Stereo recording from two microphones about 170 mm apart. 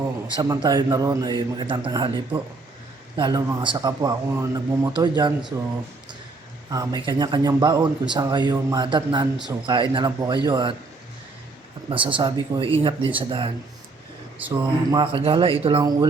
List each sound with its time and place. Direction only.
0.3 s speech: 20° right (ahead or behind)
6.7 s speech: 25° right (ahead or behind)
11.9 s speech: 30° right (ahead or behind)
14.8 s speech: 30° right (ahead or behind)
15.8 s speech: 25° right (ahead or behind)